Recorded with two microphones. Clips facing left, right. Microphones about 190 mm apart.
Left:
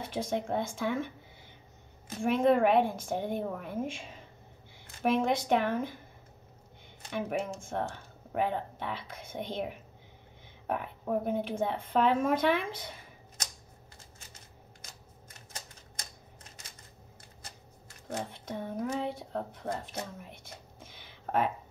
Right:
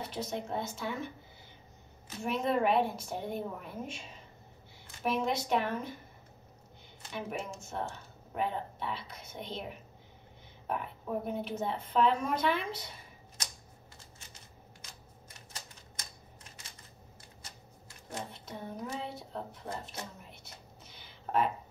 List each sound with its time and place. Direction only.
0.1 s speech: 50° left (ahead or behind)
2.0 s speech: 50° left (ahead or behind)
7.1 s speech: 55° left (ahead or behind)
10.7 s speech: 55° left (ahead or behind)
18.3 s a sound: 55° left (ahead or behind)